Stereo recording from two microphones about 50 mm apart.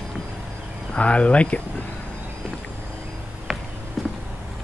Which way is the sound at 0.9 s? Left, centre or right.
Left.